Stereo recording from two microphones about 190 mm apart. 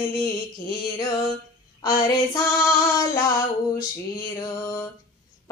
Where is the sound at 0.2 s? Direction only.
20° left (ahead or behind).